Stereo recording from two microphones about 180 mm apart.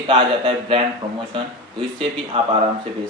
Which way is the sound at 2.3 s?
35° right (ahead or behind).